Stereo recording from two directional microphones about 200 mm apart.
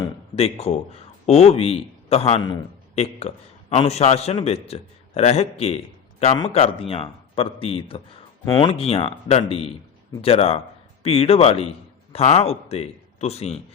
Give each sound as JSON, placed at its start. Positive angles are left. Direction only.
{"t": 0.3, "sound": "a man's voice", "side_deg": 30}